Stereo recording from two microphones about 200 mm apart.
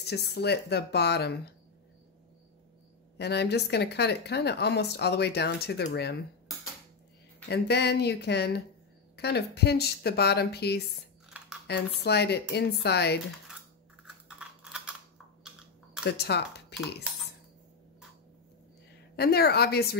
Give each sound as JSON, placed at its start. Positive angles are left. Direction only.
{"t": 0.0, "sound": "speech", "side_deg": 55}
{"t": 3.2, "sound": "speech", "side_deg": 55}
{"t": 7.4, "sound": "speech", "side_deg": 55}
{"t": 11.2, "sound": "a sound", "side_deg": -5}
{"t": 11.6, "sound": "speech", "side_deg": 55}
{"t": 14.4, "sound": "typing", "side_deg": -5}
{"t": 16.0, "sound": "speech", "side_deg": 55}
{"t": 19.1, "sound": "a woman's voice", "side_deg": 50}